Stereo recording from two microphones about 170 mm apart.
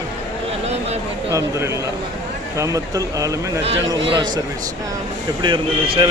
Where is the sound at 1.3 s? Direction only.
15° right (ahead or behind).